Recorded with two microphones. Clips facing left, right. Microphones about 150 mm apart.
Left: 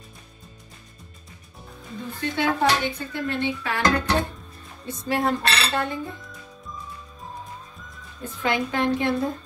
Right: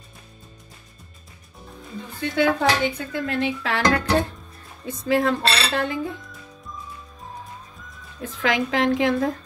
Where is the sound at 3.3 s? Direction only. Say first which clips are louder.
Right 2 dB; 90° right.